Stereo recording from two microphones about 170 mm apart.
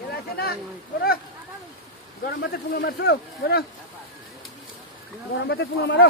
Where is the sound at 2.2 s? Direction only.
65° left (ahead or behind).